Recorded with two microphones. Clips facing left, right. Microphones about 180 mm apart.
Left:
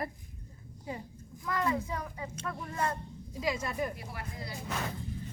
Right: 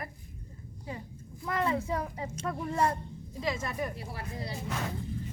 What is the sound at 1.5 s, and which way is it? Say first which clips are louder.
Child singing: right 2 dB; 30° right (ahead or behind).